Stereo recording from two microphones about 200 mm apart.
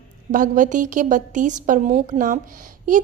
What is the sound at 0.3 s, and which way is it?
A woman's voice, 40° right (ahead or behind).